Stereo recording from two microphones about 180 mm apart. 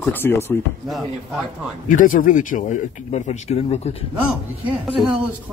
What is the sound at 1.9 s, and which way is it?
Speech, 45° left (ahead or behind).